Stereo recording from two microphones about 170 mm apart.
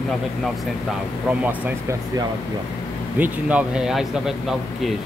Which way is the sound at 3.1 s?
10° right (ahead or behind).